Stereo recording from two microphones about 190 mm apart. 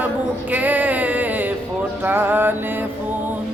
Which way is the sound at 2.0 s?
10° right (ahead or behind).